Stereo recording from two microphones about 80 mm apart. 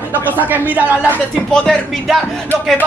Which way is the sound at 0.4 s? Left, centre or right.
Right.